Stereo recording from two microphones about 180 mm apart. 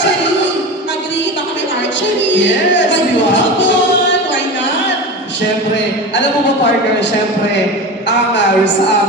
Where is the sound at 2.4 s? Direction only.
90° left.